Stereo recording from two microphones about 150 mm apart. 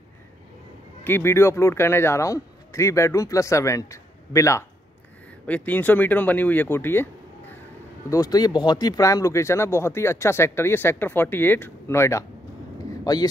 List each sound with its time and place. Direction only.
1.0 s a man's voice: 15° left (ahead or behind)
8.1 s speech: 25° left (ahead or behind)